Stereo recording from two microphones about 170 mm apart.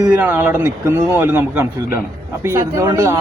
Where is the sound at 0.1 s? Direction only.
10° right (ahead or behind).